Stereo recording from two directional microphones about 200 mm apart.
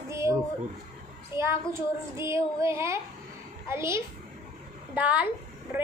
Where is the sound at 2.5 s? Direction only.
15° right (ahead or behind).